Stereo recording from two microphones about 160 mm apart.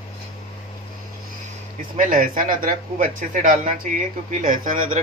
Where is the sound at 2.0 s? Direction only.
55° right (ahead or behind).